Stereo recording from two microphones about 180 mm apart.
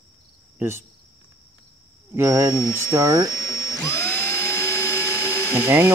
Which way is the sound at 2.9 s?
20° right (ahead or behind).